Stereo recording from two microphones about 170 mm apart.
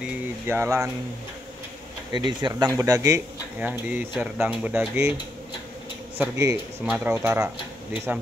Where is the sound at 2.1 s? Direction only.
25° right (ahead or behind).